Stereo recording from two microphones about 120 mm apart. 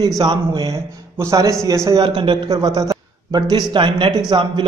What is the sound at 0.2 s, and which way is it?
Speech, 40° right (ahead or behind).